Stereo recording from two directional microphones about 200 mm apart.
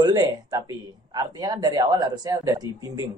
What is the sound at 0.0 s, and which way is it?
Speech, 20° right (ahead or behind).